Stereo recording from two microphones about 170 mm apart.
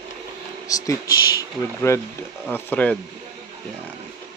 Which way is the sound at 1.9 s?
15° left (ahead or behind).